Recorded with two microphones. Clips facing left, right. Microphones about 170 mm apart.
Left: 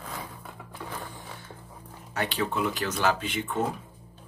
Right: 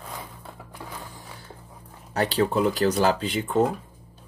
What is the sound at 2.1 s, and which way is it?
Speech, 35° right (ahead or behind).